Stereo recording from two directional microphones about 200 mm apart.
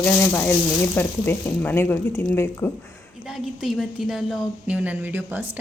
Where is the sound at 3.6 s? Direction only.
Centre (ahead or behind).